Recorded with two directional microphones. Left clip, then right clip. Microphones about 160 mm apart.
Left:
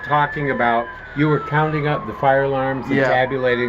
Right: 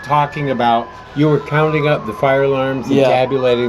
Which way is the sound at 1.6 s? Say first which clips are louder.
Right 5 dB; 25° right (ahead or behind).